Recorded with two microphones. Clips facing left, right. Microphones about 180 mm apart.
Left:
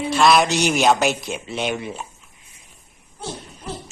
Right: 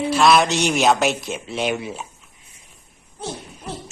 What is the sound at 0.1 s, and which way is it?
Speech, centre (ahead or behind).